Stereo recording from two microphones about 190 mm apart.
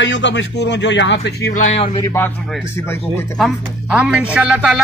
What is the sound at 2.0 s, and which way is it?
A man's voice, 15° left (ahead or behind).